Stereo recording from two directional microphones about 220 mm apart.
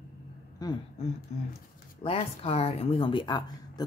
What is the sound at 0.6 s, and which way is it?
Speech, 15° left (ahead or behind).